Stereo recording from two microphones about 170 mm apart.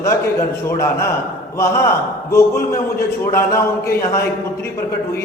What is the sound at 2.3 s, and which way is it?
A man's voice, 15° left (ahead or behind).